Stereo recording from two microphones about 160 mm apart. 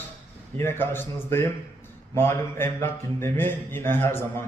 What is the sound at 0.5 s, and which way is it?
A man's voice, 15° left (ahead or behind).